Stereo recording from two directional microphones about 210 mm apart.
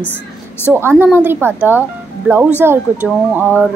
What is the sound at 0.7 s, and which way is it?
A woman's voice, 10° right (ahead or behind).